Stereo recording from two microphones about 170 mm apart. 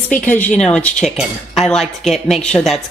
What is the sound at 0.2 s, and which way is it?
A woman's voice, 10° left (ahead or behind).